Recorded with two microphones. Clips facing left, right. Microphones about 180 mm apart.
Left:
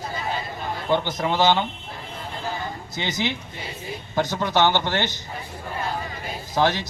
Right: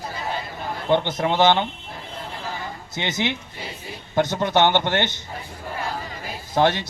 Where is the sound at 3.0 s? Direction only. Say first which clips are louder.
Right 2 dB; 15° right (ahead or behind).